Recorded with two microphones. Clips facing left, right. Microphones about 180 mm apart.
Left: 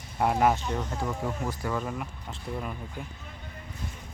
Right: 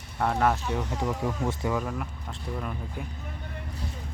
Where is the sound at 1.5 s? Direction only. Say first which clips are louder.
Right 3 dB; 25° right (ahead or behind).